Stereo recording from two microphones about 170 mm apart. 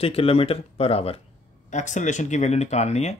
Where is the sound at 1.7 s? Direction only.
45° left (ahead or behind).